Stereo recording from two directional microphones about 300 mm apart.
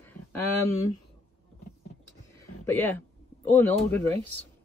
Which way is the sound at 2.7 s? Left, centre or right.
Centre.